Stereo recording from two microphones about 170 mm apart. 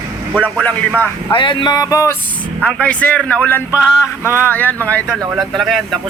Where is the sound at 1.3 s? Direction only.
30° left (ahead or behind).